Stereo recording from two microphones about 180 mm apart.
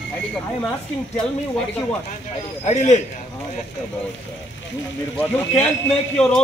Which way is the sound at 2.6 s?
40° left (ahead or behind).